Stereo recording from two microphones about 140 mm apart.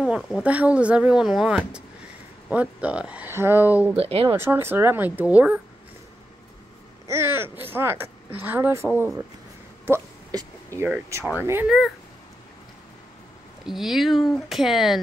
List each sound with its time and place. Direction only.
0.0 s speech: 5° right (ahead or behind)
3.9 s speech: 45° right (ahead or behind)
4.3 s speech: 15° right (ahead or behind)
7.1 s speech: 20° right (ahead or behind)
9.8 s a sound: 20° right (ahead or behind)
11.6 s speech: centre (ahead or behind)
13.7 s speech: centre (ahead or behind)